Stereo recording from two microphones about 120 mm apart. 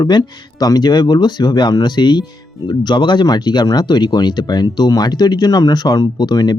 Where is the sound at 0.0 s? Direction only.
35° left (ahead or behind).